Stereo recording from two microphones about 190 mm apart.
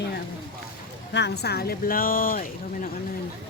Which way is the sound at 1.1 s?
60° left (ahead or behind).